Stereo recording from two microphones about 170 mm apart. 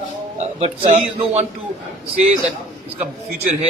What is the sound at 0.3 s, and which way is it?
A man's voice, 35° right (ahead or behind).